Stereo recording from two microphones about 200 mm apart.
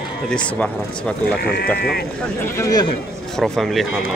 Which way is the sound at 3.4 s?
Centre (ahead or behind).